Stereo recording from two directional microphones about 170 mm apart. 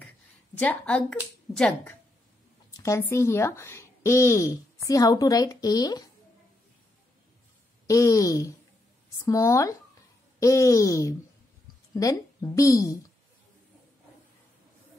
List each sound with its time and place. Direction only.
0.6 s speech: 10° left (ahead or behind)
2.8 s speech: 15° left (ahead or behind)
7.8 s a woman's voice: 20° left (ahead or behind)